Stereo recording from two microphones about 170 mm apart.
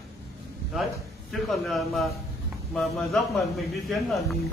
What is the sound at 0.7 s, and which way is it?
A man's voice, centre (ahead or behind).